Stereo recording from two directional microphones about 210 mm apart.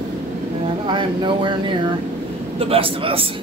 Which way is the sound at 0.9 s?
20° right (ahead or behind).